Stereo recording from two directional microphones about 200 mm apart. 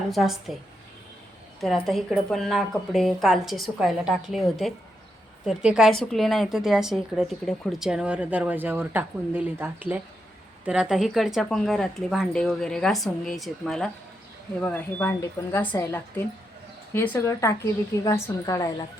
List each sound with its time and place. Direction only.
0.1 s a woman's voice: centre (ahead or behind)
1.6 s a woman's voice: centre (ahead or behind); by 18.7 s 15° left (ahead or behind)